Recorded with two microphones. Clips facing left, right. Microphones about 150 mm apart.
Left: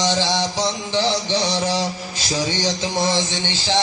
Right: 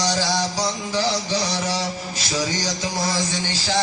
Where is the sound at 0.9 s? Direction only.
30° left (ahead or behind).